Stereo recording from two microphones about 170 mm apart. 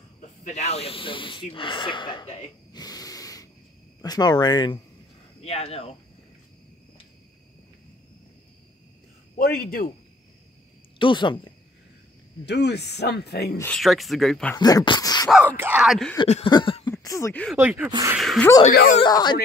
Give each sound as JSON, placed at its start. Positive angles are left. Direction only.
{"t": 0.4, "sound": "speech", "side_deg": 40}
{"t": 5.4, "sound": "speech", "side_deg": 35}
{"t": 9.4, "sound": "a man's voice", "side_deg": 60}
{"t": 11.0, "sound": "speech", "side_deg": 30}
{"t": 12.4, "sound": "speech", "side_deg": 75}
{"t": 13.7, "sound": "speech", "side_deg": 0}
{"t": 14.6, "sound": "speech", "side_deg": 25}
{"t": 15.2, "sound": "speech", "side_deg": -10}
{"t": 16.4, "sound": "a sound", "side_deg": 30}
{"t": 17.0, "sound": "speech", "side_deg": 20}
{"t": 17.6, "sound": "speech", "side_deg": -10}
{"t": 18.7, "sound": "speech", "side_deg": 55}
{"t": 18.9, "sound": "speech", "side_deg": 25}